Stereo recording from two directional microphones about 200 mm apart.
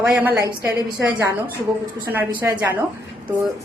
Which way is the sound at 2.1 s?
10° right (ahead or behind).